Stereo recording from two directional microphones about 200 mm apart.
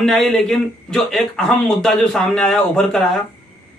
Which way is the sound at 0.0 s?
Centre (ahead or behind).